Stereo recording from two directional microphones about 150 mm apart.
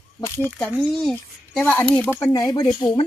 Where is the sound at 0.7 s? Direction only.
Centre (ahead or behind).